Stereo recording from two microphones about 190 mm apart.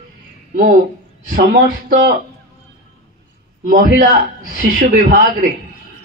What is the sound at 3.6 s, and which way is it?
A man's voice, 45° right (ahead or behind).